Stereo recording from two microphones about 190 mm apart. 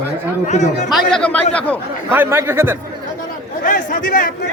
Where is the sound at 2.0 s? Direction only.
10° right (ahead or behind).